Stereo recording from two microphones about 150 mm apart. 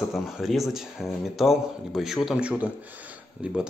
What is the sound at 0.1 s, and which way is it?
Speech, centre (ahead or behind).